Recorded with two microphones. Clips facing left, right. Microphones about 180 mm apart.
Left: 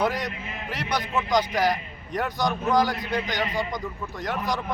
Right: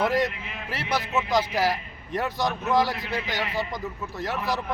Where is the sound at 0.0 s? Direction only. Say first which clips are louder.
Right 2 dB; centre (ahead or behind).